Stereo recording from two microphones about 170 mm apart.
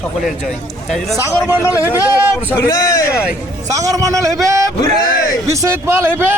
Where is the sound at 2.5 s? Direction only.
20° left (ahead or behind).